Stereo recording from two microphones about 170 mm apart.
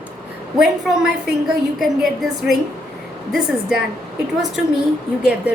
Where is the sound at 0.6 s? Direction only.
5° right (ahead or behind).